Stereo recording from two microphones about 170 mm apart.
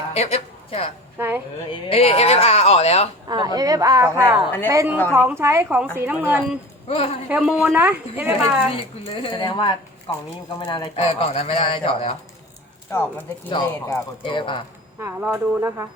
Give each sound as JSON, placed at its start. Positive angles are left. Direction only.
{"t": 0.1, "sound": "a sound", "side_deg": 40}
{"t": 1.7, "sound": "speech", "side_deg": 35}
{"t": 3.2, "sound": "a woman's voice", "side_deg": -25}
{"t": 6.8, "sound": "a woman's voice", "side_deg": 35}
{"t": 7.3, "sound": "a woman's voice", "side_deg": -5}
{"t": 9.1, "sound": "speech", "side_deg": 30}
{"t": 12.9, "sound": "speech", "side_deg": 10}
{"t": 14.3, "sound": "speech", "side_deg": 30}
{"t": 14.9, "sound": "a woman's voice", "side_deg": -15}